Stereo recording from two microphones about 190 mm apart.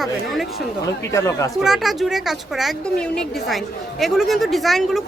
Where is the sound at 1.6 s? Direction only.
Centre (ahead or behind).